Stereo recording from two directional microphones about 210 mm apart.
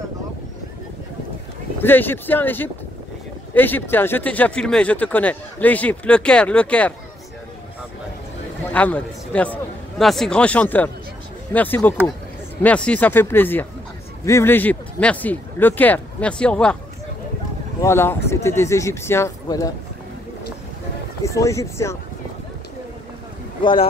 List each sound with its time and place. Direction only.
1.8 s speech: 10° left (ahead or behind)
8.7 s a man's voice: 5° left (ahead or behind)
17.8 s speech: 10° left (ahead or behind)
21.2 s speech: 15° left (ahead or behind)
23.6 s speech: 25° left (ahead or behind)